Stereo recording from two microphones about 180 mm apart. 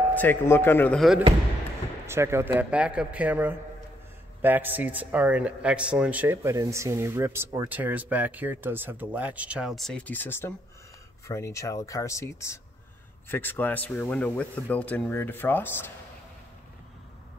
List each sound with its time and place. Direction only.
0.1 s speech: 10° left (ahead or behind)
2.0 s a man's voice: 15° right (ahead or behind); by 15.9 s 10° left (ahead or behind)